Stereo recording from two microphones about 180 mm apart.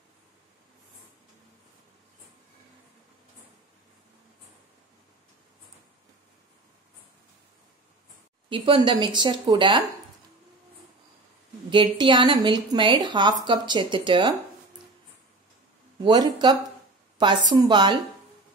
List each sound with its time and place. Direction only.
8.5 s a woman's voice: 30° right (ahead or behind)
11.7 s a woman's voice: 25° right (ahead or behind)
16.0 s a woman's voice: 25° right (ahead or behind)